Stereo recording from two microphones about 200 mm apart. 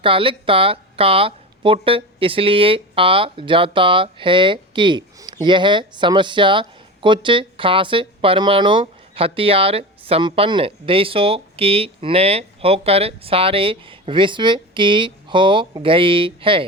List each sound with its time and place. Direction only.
0.0 s speech: 25° right (ahead or behind)